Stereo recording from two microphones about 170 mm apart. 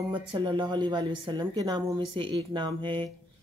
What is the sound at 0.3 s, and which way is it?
A woman's voice, 25° right (ahead or behind).